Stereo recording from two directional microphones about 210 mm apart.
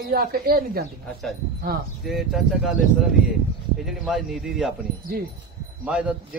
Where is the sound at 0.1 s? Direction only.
45° right (ahead or behind).